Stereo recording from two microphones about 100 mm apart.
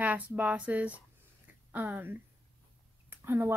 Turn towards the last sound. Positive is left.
turn(degrees=-25)  # may be behind; listen again after turning